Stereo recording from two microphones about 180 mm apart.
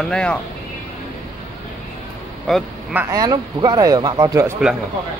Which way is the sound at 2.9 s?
15° right (ahead or behind).